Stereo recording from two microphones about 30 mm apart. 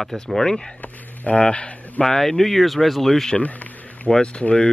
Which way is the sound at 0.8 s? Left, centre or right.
Left.